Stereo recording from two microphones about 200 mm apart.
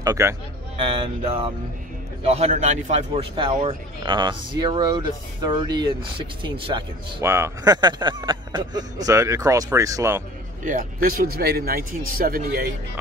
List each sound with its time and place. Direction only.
0.0 s a man's voice: 15° right (ahead or behind)
7.2 s speech: 15° right (ahead or behind)
10.6 s a man's voice: 40° right (ahead or behind)